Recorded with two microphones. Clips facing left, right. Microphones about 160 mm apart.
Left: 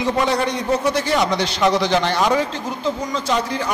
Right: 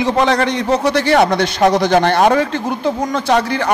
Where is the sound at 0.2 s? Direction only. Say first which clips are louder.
Right 5 dB; 90° right.